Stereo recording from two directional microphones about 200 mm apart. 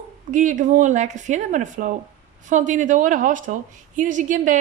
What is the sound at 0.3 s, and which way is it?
A woman's voice, 40° right (ahead or behind).